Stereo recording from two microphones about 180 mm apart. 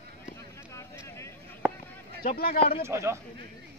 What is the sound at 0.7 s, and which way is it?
Vehicle, 15° left (ahead or behind).